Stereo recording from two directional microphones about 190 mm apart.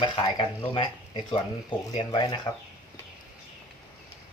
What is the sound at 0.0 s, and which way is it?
Speech, 25° left (ahead or behind).